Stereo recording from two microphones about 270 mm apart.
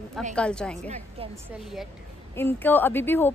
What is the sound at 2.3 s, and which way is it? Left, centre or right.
Speech, centre.